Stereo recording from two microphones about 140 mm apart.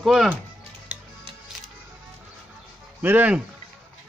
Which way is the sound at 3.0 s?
15° right (ahead or behind).